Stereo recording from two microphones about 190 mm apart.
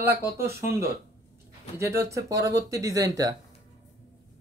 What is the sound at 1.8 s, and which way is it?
Speech, 15° right (ahead or behind).